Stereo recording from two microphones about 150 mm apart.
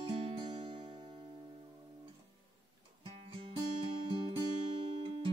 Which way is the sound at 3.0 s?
35° right (ahead or behind).